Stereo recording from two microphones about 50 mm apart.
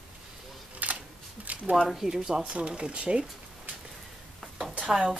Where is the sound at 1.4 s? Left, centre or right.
Right.